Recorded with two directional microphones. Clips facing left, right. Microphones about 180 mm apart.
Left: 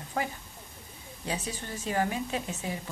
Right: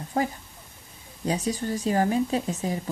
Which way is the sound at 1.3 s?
40° right (ahead or behind).